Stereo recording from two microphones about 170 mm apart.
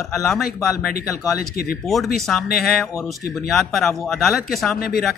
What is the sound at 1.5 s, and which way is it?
Speech, 55° left (ahead or behind).